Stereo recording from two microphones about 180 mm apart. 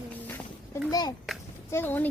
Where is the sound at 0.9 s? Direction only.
20° left (ahead or behind).